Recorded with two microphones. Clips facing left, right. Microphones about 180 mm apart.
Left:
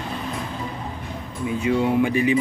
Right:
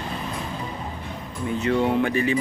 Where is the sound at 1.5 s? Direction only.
10° left (ahead or behind).